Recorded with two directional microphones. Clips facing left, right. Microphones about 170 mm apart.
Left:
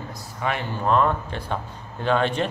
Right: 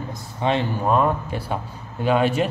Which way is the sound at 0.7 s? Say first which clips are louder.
Right 1 dB; 10° right (ahead or behind).